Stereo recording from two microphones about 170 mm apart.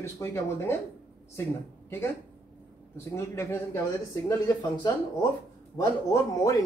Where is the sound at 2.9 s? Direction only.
15° left (ahead or behind).